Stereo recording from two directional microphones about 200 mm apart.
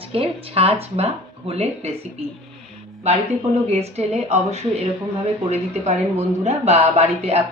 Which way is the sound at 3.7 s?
30° right (ahead or behind).